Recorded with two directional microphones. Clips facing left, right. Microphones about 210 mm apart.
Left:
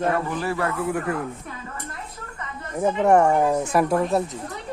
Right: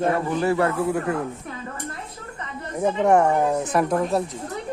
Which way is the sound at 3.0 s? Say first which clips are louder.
Left 1 dB; 10° left (ahead or behind).